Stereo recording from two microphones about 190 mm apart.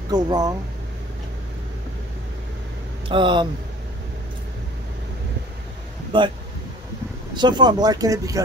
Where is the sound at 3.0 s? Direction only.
25° right (ahead or behind).